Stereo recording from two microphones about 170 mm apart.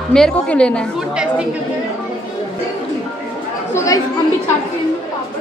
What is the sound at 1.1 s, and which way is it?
Speech, 5° right (ahead or behind).